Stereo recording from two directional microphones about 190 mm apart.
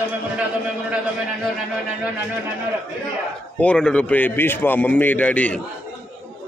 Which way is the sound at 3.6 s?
5° left (ahead or behind).